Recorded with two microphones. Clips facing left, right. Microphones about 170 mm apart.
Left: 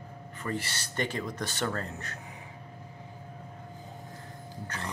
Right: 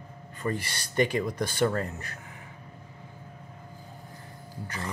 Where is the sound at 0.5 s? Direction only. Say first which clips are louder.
Right 6 dB; 15° right (ahead or behind).